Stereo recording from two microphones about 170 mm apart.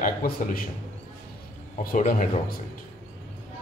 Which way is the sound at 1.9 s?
50° left (ahead or behind).